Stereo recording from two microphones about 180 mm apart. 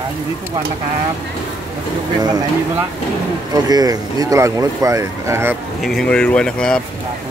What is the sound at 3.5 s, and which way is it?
Speech, 20° right (ahead or behind).